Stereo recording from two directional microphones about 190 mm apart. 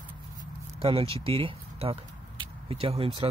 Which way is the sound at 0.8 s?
30° right (ahead or behind).